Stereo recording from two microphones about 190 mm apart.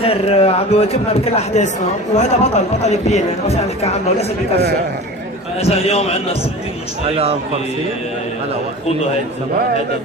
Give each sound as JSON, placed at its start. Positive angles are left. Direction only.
{"t": 0.0, "sound": "speech", "side_deg": 30}
{"t": 7.1, "sound": "a man's voice", "side_deg": -30}